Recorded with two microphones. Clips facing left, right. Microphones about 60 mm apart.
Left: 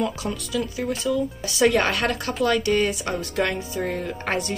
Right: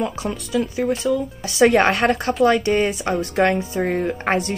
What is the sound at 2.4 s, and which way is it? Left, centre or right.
Speech, right.